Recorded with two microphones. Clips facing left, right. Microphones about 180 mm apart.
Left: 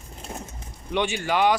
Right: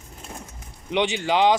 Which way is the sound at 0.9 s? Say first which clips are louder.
Right 2 dB; 20° right (ahead or behind).